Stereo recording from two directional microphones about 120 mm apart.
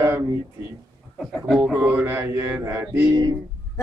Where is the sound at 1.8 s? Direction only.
15° right (ahead or behind).